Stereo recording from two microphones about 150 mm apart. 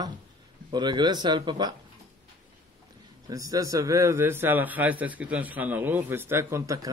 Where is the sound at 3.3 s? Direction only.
25° right (ahead or behind).